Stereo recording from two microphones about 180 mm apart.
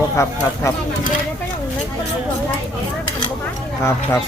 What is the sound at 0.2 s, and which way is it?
Speech, 15° left (ahead or behind).